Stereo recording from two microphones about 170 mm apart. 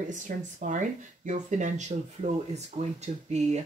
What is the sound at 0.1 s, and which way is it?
Speech, 50° right (ahead or behind).